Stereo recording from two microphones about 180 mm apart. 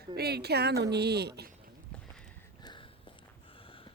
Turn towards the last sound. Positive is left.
turn(degrees=30)  # may be behind; listen again after turning